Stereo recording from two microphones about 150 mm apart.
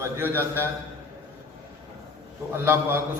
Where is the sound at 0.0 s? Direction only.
15° right (ahead or behind).